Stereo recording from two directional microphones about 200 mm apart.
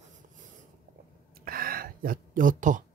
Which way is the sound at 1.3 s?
45° right (ahead or behind).